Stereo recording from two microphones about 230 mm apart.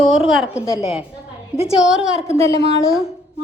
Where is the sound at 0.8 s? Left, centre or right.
Centre.